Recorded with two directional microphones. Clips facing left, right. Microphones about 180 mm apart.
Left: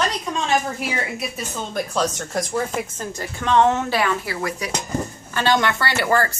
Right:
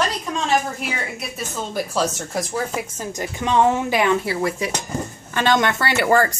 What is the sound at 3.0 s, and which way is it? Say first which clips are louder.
Speech: right 2 dB; 15° right (ahead or behind).